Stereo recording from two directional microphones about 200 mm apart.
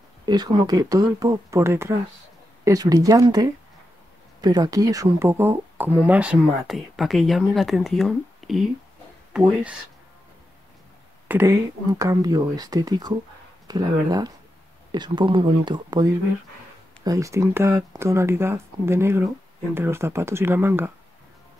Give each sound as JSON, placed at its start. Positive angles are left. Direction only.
{"t": 0.2, "sound": "speech", "side_deg": -20}
{"t": 11.2, "sound": "speech", "side_deg": -10}